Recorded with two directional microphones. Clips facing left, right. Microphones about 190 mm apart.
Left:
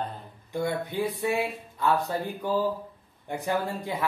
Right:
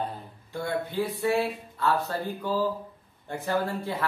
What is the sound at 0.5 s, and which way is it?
Speech, 15° left (ahead or behind).